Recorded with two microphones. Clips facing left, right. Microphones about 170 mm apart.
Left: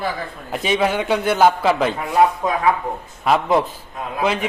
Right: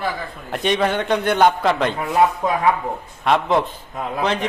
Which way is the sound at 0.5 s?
5° left (ahead or behind).